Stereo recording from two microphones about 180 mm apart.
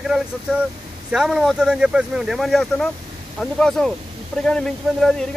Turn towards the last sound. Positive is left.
turn(degrees=5)  # may be behind; listen again after turning